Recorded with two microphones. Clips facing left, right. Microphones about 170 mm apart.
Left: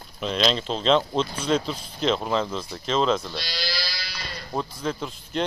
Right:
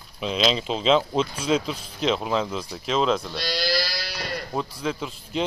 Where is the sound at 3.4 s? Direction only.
60° right (ahead or behind).